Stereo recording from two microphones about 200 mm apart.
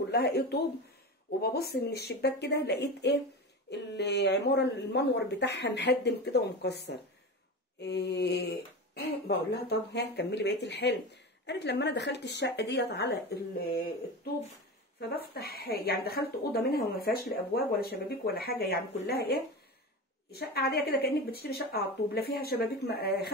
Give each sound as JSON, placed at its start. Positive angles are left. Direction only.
{"t": 0.1, "sound": "speech", "side_deg": 55}
{"t": 15.0, "sound": "speech", "side_deg": 50}